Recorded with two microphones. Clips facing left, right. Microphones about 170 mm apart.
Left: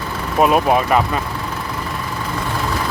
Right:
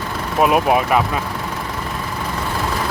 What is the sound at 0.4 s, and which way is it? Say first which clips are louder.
Speech: even; 5° right (ahead or behind).